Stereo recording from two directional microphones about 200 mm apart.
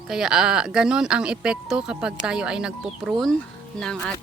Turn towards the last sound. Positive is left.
turn(degrees=5)  # may be behind; listen again after turning